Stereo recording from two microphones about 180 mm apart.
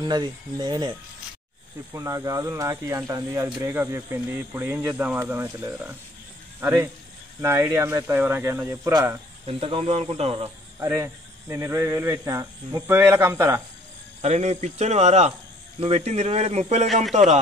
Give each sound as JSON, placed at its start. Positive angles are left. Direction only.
{"t": 0.0, "sound": "speech", "side_deg": -25}
{"t": 2.0, "sound": "speech", "side_deg": -15}
{"t": 9.5, "sound": "speech", "side_deg": -30}
{"t": 10.8, "sound": "speech", "side_deg": -15}
{"t": 14.2, "sound": "speech", "side_deg": -40}
{"t": 16.8, "sound": "a man's voice", "side_deg": 0}